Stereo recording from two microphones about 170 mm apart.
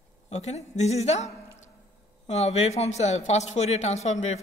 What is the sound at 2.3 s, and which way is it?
A woman's voice, 40° left (ahead or behind).